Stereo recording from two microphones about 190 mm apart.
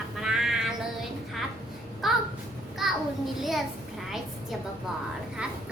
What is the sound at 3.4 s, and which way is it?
Speech, centre (ahead or behind).